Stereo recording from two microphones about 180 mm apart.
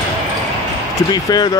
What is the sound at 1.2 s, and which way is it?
Speech, 25° left (ahead or behind).